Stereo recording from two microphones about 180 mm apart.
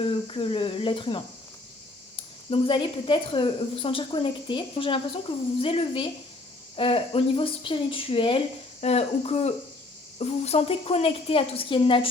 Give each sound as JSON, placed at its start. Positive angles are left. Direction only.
{"t": 0.0, "sound": "speech", "side_deg": 30}
{"t": 2.5, "sound": "a woman's voice", "side_deg": 30}